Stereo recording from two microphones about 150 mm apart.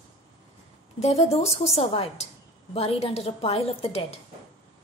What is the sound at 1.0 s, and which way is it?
A woman's voice, 45° left (ahead or behind).